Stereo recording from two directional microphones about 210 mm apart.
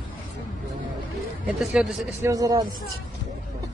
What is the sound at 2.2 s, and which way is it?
Speech, 15° right (ahead or behind).